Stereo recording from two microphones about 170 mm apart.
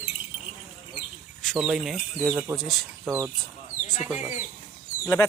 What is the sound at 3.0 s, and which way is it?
Speech, 15° right (ahead or behind).